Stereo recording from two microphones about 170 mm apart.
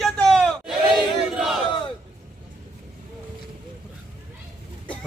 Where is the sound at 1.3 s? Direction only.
5° right (ahead or behind).